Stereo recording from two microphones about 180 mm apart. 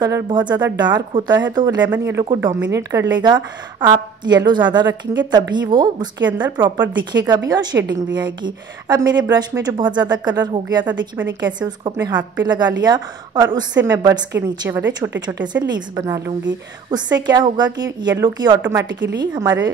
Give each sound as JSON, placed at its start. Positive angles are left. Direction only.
{"t": 0.0, "sound": "a woman's voice", "side_deg": -25}
{"t": 1.9, "sound": "a woman's voice", "side_deg": -15}